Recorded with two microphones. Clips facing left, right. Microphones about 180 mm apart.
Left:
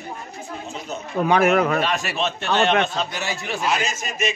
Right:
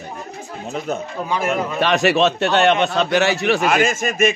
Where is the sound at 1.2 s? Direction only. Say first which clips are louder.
Left 5 dB; 65° left (ahead or behind).